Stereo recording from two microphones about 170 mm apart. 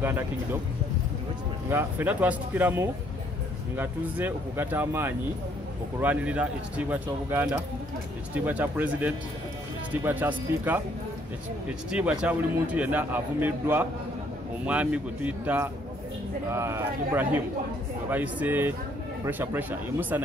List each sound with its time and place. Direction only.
0.0 s a man's voice: 15° right (ahead or behind)
1.7 s a man's voice: 10° right (ahead or behind)
11.9 s a man's voice: 5° right (ahead or behind)